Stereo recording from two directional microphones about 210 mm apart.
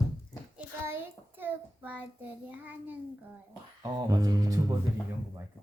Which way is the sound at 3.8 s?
15° right (ahead or behind).